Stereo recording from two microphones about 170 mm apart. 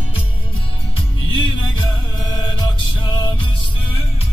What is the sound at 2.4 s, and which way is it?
Music, 25° left (ahead or behind).